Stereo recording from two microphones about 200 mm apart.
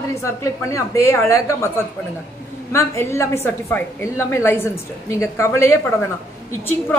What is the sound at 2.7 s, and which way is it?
A woman's voice, 15° left (ahead or behind).